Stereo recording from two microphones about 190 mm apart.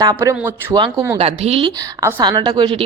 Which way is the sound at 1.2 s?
30° right (ahead or behind).